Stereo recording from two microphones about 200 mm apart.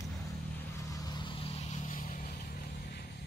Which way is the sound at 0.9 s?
20° left (ahead or behind).